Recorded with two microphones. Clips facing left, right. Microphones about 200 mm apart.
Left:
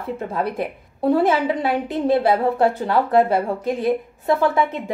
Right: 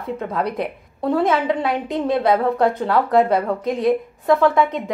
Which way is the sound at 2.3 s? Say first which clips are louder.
Right 1 dB; 25° left (ahead or behind).